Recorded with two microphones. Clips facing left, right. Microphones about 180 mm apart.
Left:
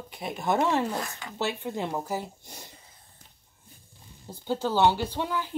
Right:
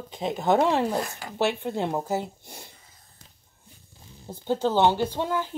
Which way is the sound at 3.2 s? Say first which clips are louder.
Right 6 dB; 90° right.